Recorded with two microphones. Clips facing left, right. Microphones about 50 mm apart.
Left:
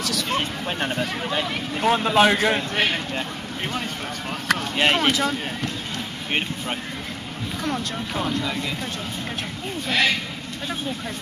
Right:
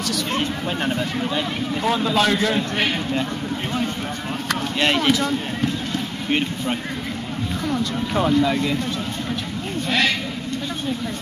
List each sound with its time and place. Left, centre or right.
0.9 s speech: centre
2.0 s a man's voice: left
2.7 s a man's voice: centre
4.7 s speech: centre
8.1 s speech: centre
9.8 s a man's voice: centre